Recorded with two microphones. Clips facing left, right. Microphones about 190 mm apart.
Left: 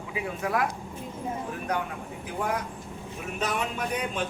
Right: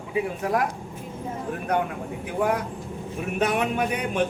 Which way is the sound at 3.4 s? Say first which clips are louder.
Right 6 dB; 60° right (ahead or behind).